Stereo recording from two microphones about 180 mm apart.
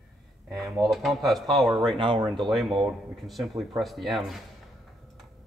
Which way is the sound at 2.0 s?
25° right (ahead or behind).